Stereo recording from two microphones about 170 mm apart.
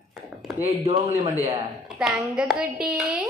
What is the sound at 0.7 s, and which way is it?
Speech, 35° right (ahead or behind).